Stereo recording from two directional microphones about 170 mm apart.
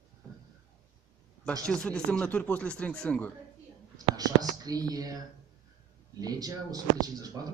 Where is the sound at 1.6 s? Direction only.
5° left (ahead or behind).